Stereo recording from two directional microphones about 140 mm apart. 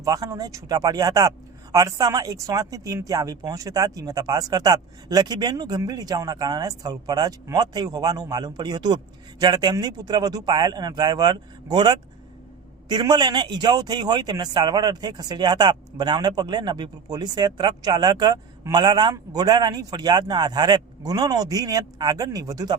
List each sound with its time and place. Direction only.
0.0 s a man's voice: 25° right (ahead or behind)